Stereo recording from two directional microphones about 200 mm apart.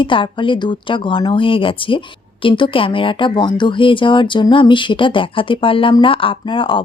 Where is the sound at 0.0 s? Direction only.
25° left (ahead or behind).